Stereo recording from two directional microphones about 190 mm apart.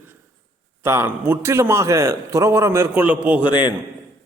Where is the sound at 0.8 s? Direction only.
15° right (ahead or behind).